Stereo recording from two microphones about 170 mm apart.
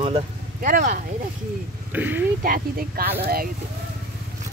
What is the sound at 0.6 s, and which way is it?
Speech, 50° right (ahead or behind).